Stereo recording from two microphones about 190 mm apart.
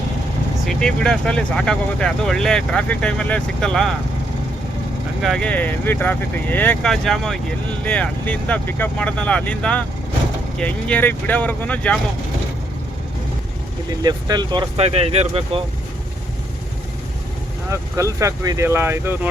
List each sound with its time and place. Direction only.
0.7 s speech: 5° left (ahead or behind)
5.2 s speech: 5° left (ahead or behind)
14.0 s speech: 20° right (ahead or behind)
14.8 s speech: 35° right (ahead or behind)
17.7 s speech: 15° right (ahead or behind)